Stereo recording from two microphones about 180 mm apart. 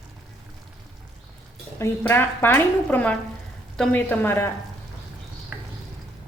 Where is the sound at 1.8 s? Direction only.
10° left (ahead or behind).